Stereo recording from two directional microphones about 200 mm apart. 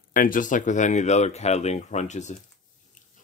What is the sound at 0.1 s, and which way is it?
Speech, 45° left (ahead or behind).